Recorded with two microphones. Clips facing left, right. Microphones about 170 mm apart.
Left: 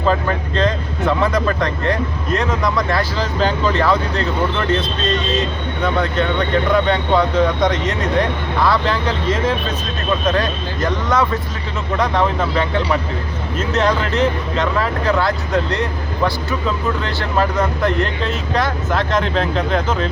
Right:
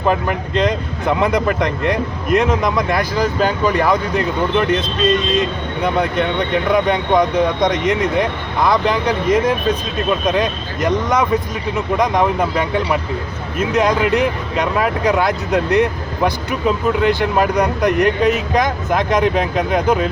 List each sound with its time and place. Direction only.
0.0 s speech: 15° right (ahead or behind)